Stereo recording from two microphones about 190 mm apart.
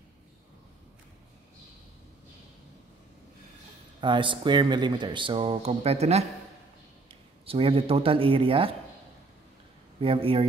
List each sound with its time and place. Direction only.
4.0 s speech: 25° right (ahead or behind)
7.4 s speech: 30° right (ahead or behind)
9.9 s speech: 30° right (ahead or behind)